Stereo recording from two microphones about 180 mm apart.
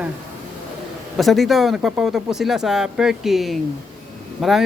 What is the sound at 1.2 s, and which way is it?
Speech, centre (ahead or behind).